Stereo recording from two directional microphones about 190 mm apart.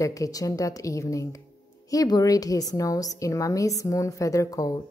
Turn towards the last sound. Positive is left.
turn(degrees=20)  # may be behind; listen again after turning